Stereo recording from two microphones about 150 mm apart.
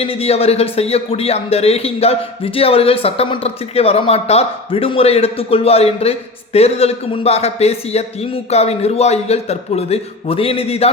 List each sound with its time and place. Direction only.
0.0 s speech: 40° left (ahead or behind)